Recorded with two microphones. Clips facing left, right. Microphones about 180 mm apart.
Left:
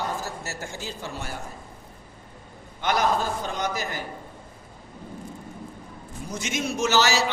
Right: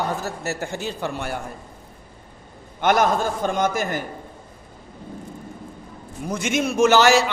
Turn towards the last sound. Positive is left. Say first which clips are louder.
# right 7 dB
turn(degrees=-55)  # may be behind; listen again after turning